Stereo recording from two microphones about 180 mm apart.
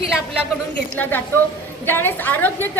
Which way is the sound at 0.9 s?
10° left (ahead or behind).